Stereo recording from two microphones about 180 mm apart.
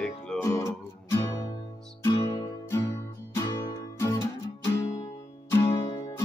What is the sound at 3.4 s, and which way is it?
Music, 15° left (ahead or behind).